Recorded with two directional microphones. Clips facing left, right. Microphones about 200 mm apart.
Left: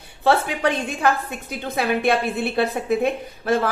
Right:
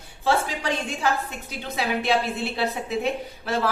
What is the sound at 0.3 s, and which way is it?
A woman's voice, 60° left (ahead or behind).